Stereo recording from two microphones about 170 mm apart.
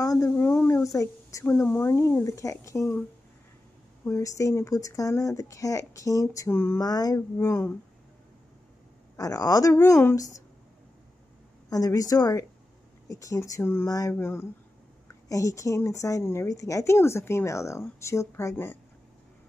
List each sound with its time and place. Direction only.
0.0 s speech: 20° left (ahead or behind)
4.0 s speech: 20° left (ahead or behind)
9.1 s speech: 20° left (ahead or behind)
11.7 s a woman's voice: 20° left (ahead or behind)